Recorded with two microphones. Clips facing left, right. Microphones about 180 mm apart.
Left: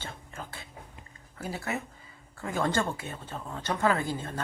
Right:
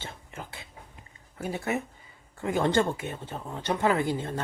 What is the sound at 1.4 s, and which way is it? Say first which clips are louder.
Speech: right 4 dB; 20° right (ahead or behind).